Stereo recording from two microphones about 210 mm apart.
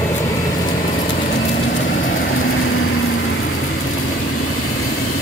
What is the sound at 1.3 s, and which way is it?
Vehicle, 60° left (ahead or behind).